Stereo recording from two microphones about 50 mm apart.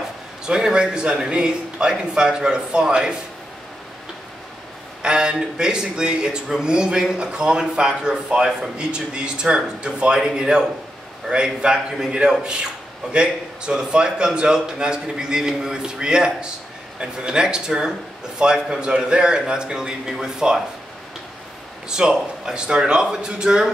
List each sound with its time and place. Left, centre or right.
0.5 s speech: centre
5.0 s speech: centre
21.8 s speech: centre